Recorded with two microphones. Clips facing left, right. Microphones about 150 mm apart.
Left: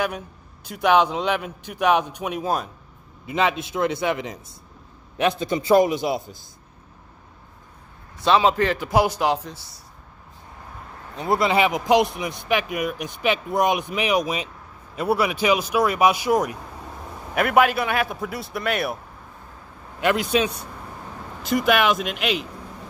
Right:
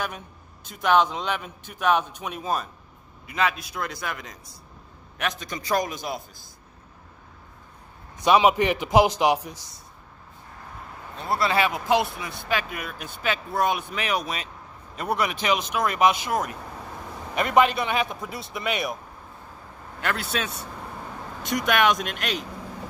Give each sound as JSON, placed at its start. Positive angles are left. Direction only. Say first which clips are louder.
{"t": 0.7, "sound": "speech", "louder": "left 3 dB", "side_deg": 10}
{"t": 3.3, "sound": "a man's voice", "louder": "left 4 dB", "side_deg": 25}
{"t": 8.2, "sound": "a man's voice", "louder": "even", "side_deg": -15}
{"t": 11.1, "sound": "speech", "louder": "left 4 dB", "side_deg": 20}
{"t": 17.6, "sound": "speech", "louder": "left 1 dB", "side_deg": 5}
{"t": 20.0, "sound": "speech", "louder": "left 8 dB", "side_deg": 15}